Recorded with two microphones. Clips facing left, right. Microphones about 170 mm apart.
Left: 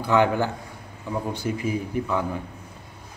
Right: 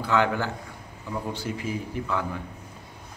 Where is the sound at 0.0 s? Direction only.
15° left (ahead or behind).